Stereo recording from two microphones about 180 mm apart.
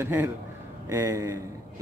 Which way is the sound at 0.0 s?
10° right (ahead or behind).